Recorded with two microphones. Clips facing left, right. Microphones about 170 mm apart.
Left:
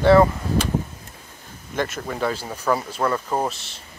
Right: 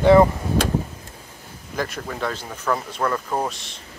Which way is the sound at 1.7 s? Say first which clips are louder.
Left 2 dB; centre (ahead or behind).